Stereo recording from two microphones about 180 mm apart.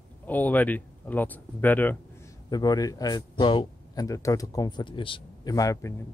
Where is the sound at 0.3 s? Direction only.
10° left (ahead or behind).